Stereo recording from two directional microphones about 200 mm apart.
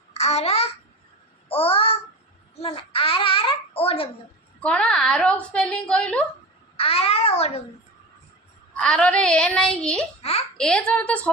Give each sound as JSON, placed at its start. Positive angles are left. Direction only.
{"t": 0.1, "sound": "babbling", "side_deg": 30}
{"t": 1.5, "sound": "a child's voice", "side_deg": 30}
{"t": 4.6, "sound": "a woman's voice", "side_deg": 5}
{"t": 6.7, "sound": "a child's voice", "side_deg": 30}
{"t": 8.7, "sound": "a woman's voice", "side_deg": 5}